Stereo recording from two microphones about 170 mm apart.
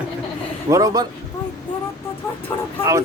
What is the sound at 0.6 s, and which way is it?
Speech, 20° right (ahead or behind).